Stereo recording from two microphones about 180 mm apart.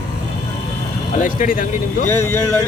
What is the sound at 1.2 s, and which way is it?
Speech, 50° left (ahead or behind).